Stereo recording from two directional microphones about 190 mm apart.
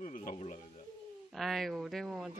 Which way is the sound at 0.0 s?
45° left (ahead or behind).